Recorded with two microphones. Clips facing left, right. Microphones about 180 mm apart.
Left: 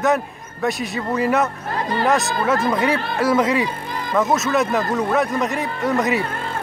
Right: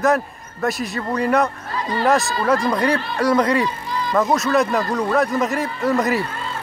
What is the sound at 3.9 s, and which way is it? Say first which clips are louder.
Music: right 3 dB; 55° left (ahead or behind).